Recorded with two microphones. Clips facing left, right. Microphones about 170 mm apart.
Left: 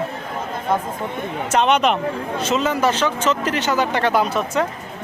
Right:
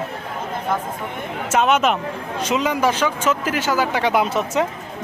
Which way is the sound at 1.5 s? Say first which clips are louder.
Even; 5° right (ahead or behind).